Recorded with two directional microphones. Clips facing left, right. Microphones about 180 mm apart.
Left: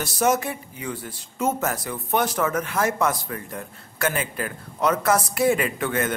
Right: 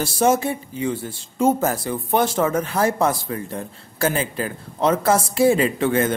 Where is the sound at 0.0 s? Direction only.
30° right (ahead or behind).